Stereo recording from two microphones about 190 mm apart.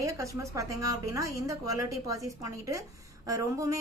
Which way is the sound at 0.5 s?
15° right (ahead or behind).